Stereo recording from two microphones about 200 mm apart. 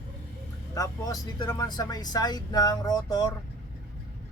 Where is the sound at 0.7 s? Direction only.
20° left (ahead or behind).